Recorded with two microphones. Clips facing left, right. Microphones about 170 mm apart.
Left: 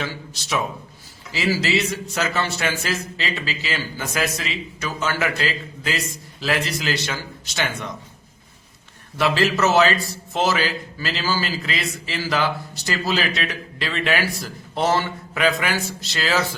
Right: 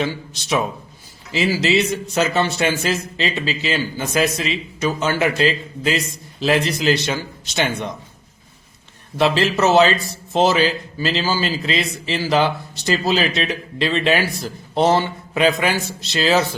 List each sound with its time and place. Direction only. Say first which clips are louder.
0.0 s a man's voice: right 6 dB; 20° right (ahead or behind)
9.1 s a man's voice: right 3 dB; 20° right (ahead or behind)